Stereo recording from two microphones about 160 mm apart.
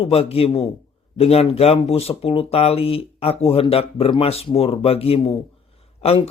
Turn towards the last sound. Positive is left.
turn(degrees=40)  # may be behind; listen again after turning